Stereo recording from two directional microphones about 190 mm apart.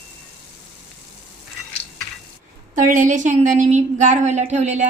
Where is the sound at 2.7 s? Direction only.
40° right (ahead or behind).